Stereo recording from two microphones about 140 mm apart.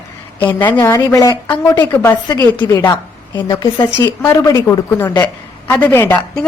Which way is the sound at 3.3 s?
30° left (ahead or behind).